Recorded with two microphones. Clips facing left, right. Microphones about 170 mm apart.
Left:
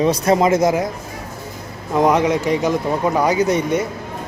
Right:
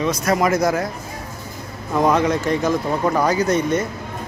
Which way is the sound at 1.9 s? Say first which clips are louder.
Left 2 dB; 20° left (ahead or behind).